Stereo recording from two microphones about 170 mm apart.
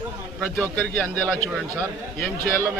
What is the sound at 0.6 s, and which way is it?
Speech, 10° left (ahead or behind).